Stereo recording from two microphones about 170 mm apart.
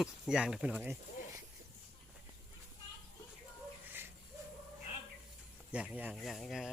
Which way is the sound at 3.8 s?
10° right (ahead or behind).